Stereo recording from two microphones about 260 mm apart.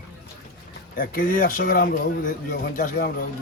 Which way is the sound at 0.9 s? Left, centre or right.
Left.